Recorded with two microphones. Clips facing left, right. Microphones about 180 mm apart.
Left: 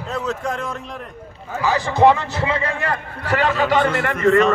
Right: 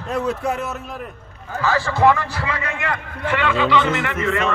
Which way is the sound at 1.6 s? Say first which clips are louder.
Left 2 dB; 20° left (ahead or behind).